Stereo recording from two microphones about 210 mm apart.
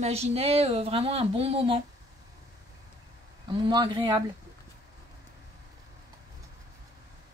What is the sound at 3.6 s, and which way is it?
Speech, 20° right (ahead or behind).